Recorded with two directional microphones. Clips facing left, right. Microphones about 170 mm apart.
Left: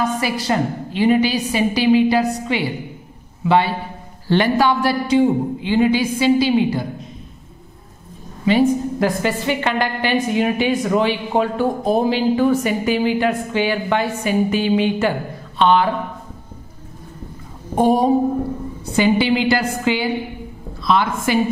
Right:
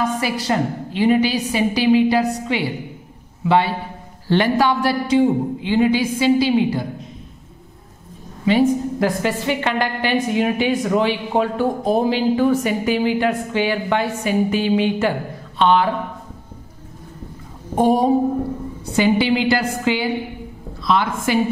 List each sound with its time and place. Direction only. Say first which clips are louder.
0.0 s a woman's voice: left 1 dB; 5° left (ahead or behind)
8.5 s a woman's voice: left 1 dB; 5° left (ahead or behind)
17.7 s a woman's voice: left 1 dB; 10° left (ahead or behind)